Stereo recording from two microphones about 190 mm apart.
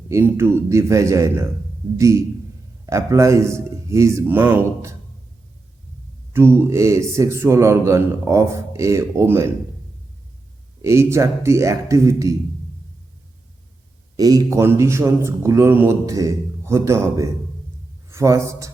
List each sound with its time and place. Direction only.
0.1 s a man's voice: 15° right (ahead or behind)
2.8 s a man's voice: 15° right (ahead or behind)
6.3 s a man's voice: 15° right (ahead or behind)
10.8 s a man's voice: 15° right (ahead or behind)
14.2 s a man's voice: 20° right (ahead or behind)